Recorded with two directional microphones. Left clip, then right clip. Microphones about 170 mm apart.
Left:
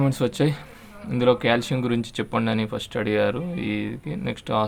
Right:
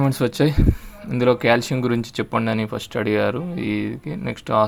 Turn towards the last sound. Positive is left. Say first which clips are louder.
# right 5 dB
turn(degrees=-15)  # may be behind; listen again after turning